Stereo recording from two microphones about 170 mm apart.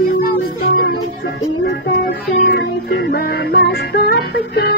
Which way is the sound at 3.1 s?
75° left (ahead or behind).